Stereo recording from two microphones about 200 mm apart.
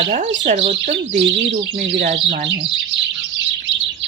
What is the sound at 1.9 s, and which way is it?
Speech, 40° right (ahead or behind).